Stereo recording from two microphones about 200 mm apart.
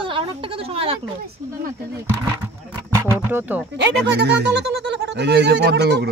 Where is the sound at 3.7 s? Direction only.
60° right (ahead or behind).